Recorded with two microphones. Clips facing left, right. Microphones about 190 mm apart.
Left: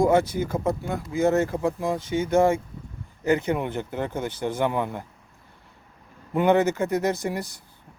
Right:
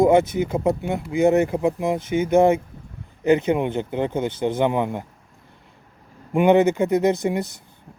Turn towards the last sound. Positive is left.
turn(degrees=-20)  # may be behind; listen again after turning